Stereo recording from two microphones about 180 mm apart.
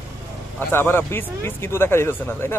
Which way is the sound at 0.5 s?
10° left (ahead or behind).